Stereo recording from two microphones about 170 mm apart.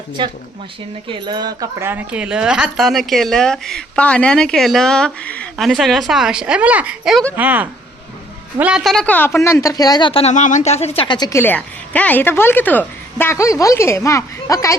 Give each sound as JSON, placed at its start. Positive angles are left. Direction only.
{"t": 0.2, "sound": "speech", "side_deg": -30}